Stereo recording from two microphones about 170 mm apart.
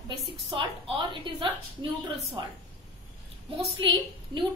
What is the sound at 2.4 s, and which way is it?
Speech, 25° right (ahead or behind).